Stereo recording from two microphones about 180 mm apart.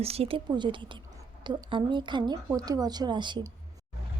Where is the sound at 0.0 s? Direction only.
35° right (ahead or behind).